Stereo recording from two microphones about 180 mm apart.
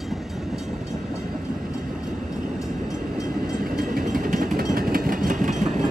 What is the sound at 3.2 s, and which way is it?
Train, 50° right (ahead or behind).